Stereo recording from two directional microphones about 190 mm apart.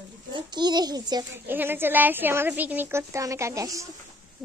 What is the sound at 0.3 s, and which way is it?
A child's voice, 20° right (ahead or behind).